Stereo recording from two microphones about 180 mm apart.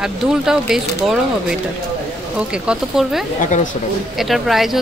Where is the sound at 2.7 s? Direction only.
Centre (ahead or behind).